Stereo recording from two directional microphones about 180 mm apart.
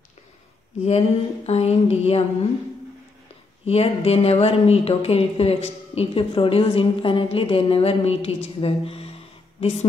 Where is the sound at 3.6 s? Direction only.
35° left (ahead or behind).